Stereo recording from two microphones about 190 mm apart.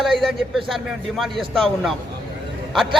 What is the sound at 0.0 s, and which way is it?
A man's voice, centre (ahead or behind).